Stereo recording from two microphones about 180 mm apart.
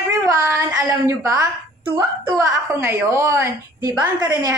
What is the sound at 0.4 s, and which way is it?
A woman's voice, 15° right (ahead or behind).